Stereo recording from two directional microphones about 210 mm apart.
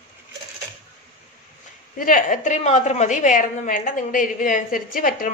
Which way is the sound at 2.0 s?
40° left (ahead or behind).